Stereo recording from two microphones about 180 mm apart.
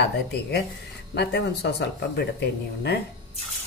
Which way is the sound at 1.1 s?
65° left (ahead or behind).